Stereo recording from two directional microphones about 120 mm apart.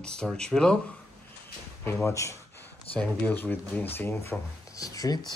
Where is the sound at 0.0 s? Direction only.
5° left (ahead or behind).